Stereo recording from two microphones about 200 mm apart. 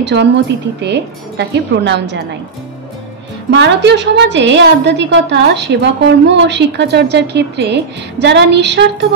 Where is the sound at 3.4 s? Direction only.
60° right (ahead or behind).